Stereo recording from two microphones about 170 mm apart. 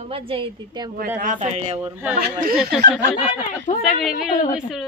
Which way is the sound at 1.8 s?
10° right (ahead or behind).